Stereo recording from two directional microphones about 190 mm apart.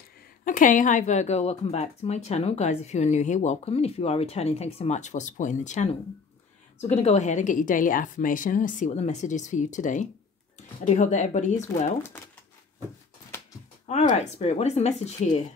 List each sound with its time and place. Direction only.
0.5 s speech: 45° left (ahead or behind)
6.9 s speech: 35° left (ahead or behind)
14.1 s speech: 35° left (ahead or behind)